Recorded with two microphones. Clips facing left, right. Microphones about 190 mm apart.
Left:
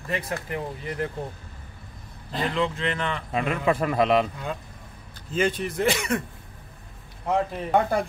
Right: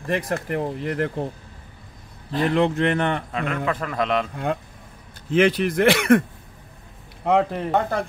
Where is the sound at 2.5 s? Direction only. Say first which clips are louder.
Right 8 dB; 60° right (ahead or behind).